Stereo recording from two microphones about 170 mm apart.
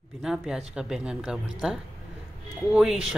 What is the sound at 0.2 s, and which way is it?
Speech, 5° right (ahead or behind).